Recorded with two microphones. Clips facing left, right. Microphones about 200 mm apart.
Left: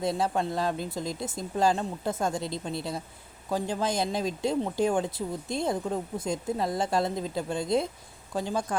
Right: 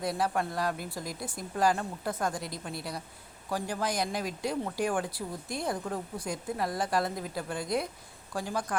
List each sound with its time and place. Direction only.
0.0 s speech: 25° left (ahead or behind)